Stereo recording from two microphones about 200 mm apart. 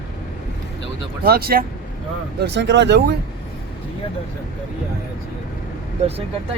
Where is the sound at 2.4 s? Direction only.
60° right (ahead or behind).